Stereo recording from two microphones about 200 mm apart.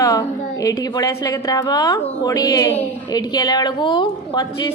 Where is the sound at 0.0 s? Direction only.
15° left (ahead or behind).